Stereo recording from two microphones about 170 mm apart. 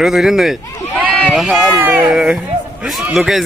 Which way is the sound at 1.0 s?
5° left (ahead or behind).